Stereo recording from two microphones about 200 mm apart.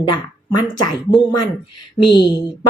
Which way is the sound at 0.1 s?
20° left (ahead or behind).